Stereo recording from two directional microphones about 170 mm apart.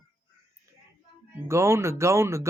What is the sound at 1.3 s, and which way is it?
Speech, 15° right (ahead or behind).